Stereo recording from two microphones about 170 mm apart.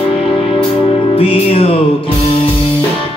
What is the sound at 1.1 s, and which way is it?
Music, 35° left (ahead or behind).